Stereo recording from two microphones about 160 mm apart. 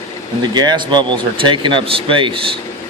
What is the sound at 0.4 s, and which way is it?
Speech, 25° right (ahead or behind).